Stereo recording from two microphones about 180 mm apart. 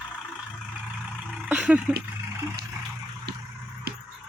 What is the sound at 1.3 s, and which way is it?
Vehicle, 5° right (ahead or behind).